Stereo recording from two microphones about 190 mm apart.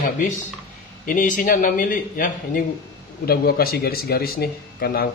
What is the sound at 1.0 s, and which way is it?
Speech, 45° left (ahead or behind).